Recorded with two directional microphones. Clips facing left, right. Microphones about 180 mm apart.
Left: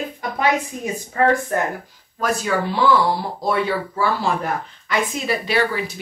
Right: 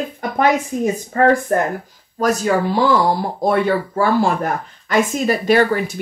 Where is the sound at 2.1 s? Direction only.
40° right (ahead or behind).